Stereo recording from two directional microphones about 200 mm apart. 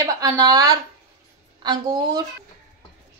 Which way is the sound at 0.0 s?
15° right (ahead or behind).